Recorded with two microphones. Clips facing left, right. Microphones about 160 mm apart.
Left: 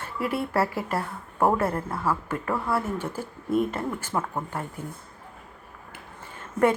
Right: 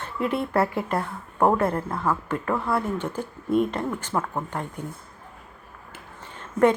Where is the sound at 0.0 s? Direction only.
5° left (ahead or behind).